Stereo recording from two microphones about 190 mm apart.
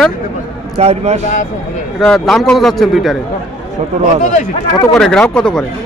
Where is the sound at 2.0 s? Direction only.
Centre (ahead or behind).